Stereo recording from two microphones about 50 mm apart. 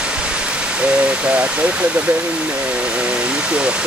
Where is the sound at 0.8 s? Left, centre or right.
Right.